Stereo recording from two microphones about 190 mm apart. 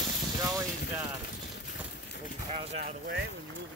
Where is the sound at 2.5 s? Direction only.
35° right (ahead or behind).